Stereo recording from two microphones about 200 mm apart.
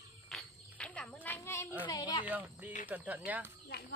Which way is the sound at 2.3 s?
10° right (ahead or behind).